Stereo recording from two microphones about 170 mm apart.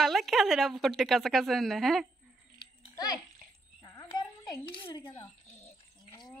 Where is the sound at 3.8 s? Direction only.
25° left (ahead or behind).